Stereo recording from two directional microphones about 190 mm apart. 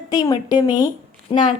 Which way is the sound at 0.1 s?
20° left (ahead or behind).